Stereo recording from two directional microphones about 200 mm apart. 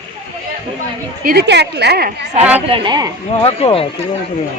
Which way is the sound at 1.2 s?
50° right (ahead or behind).